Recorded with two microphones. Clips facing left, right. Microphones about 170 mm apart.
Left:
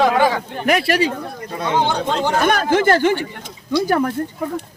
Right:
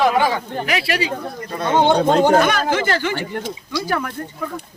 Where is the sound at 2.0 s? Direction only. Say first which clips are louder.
Right 6 dB; 50° right (ahead or behind).